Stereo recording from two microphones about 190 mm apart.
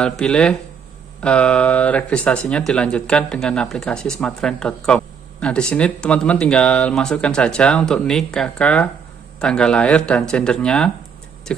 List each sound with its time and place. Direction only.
0.0 s speech: 5° left (ahead or behind)